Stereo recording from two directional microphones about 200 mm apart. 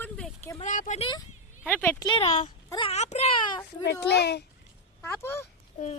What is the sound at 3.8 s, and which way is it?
Speech, 55° left (ahead or behind).